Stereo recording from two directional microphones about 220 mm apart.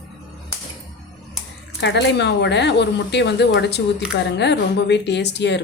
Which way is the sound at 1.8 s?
50° left (ahead or behind).